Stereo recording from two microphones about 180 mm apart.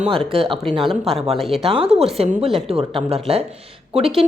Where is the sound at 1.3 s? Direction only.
Centre (ahead or behind).